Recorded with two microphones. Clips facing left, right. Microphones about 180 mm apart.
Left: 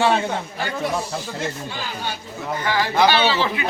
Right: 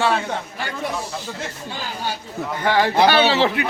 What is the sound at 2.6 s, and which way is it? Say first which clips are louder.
Speech: right 5 dB; 55° right (ahead or behind).